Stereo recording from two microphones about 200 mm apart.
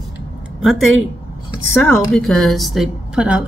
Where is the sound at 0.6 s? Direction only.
Centre (ahead or behind).